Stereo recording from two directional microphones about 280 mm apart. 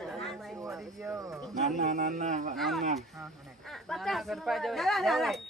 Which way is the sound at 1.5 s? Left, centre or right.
Right.